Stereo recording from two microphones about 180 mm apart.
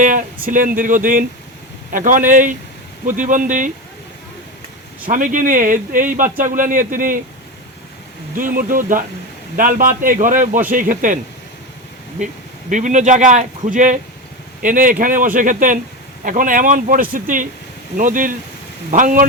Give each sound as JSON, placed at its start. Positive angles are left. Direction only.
{"t": 0.0, "sound": "speech", "side_deg": -45}
{"t": 5.0, "sound": "speech", "side_deg": -45}
{"t": 8.4, "sound": "speech", "side_deg": -50}
{"t": 12.7, "sound": "speech", "side_deg": -45}